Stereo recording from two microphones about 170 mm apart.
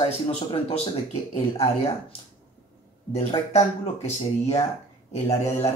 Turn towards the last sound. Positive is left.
turn(degrees=40)  # may be behind; listen again after turning